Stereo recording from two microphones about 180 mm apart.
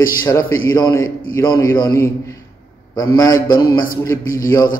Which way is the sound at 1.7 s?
20° left (ahead or behind).